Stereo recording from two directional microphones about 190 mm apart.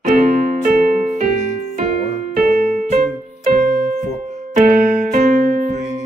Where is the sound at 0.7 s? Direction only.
45° right (ahead or behind).